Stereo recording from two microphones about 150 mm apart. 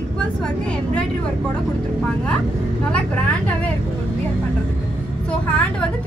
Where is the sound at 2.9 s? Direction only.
10° left (ahead or behind).